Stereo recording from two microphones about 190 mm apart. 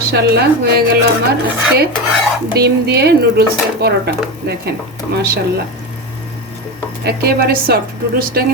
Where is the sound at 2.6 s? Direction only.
60° right (ahead or behind).